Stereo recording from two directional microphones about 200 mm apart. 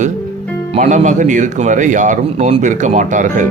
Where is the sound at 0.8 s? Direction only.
40° right (ahead or behind).